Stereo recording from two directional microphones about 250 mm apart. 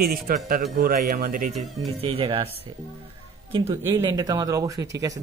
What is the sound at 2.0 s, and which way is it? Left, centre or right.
Speech, right.